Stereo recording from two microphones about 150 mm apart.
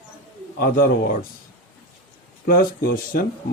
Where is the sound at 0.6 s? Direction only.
90° left.